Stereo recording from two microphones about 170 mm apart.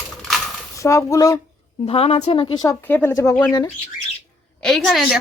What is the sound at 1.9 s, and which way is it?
A woman's voice, 35° left (ahead or behind).